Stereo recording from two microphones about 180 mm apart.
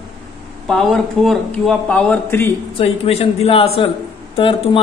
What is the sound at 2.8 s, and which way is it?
A man's voice, 35° left (ahead or behind).